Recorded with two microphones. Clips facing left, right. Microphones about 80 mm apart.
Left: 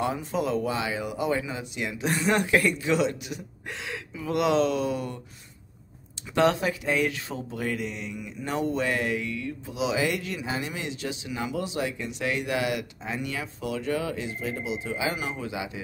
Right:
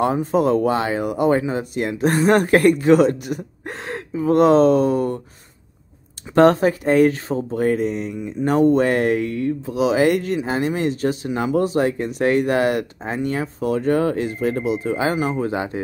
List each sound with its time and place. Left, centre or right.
0.0 s speech: right
6.3 s speech: right